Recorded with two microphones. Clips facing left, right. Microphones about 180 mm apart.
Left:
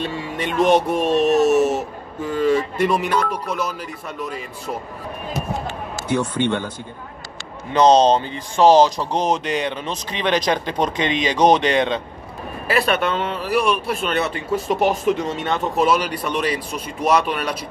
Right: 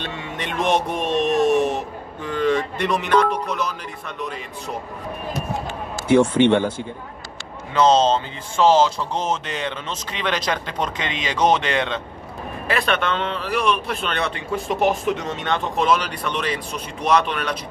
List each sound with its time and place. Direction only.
0.4 s a man's voice: centre (ahead or behind)
6.0 s speech: 25° right (ahead or behind)
7.7 s a man's voice: 15° left (ahead or behind)
12.6 s a man's voice: 5° left (ahead or behind)